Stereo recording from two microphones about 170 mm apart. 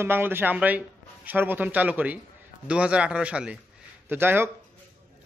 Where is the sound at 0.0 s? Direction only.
10° right (ahead or behind).